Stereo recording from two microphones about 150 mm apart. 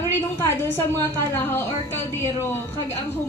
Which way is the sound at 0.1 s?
15° left (ahead or behind).